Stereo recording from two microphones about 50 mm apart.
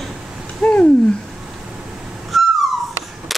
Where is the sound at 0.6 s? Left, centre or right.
Left.